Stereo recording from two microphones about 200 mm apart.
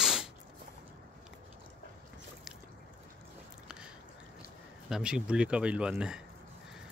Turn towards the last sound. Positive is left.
turn(degrees=-5)  # may be behind; listen again after turning